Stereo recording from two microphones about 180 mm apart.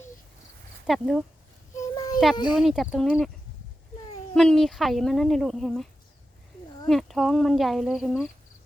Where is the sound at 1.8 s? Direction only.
20° left (ahead or behind).